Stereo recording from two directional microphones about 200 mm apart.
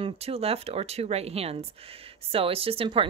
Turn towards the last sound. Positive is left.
turn(degrees=-30)  # may be behind; listen again after turning